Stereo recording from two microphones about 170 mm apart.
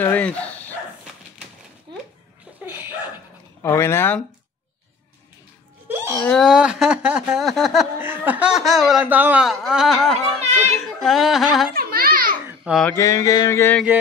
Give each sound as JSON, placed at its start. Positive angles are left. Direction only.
{"t": 0.0, "sound": "speech", "side_deg": 10}
{"t": 2.6, "sound": "dog", "side_deg": -10}
{"t": 3.6, "sound": "mantra", "side_deg": 15}
{"t": 5.9, "sound": "wail", "side_deg": -15}
{"t": 6.2, "sound": "speech", "side_deg": 5}
{"t": 8.0, "sound": "speech", "side_deg": -10}
{"t": 11.7, "sound": "a sound", "side_deg": -60}
{"t": 12.4, "sound": "babbling", "side_deg": -5}
{"t": 12.8, "sound": "mantra", "side_deg": 15}